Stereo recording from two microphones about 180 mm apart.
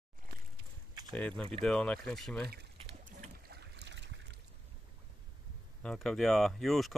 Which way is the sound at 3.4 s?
65° right (ahead or behind).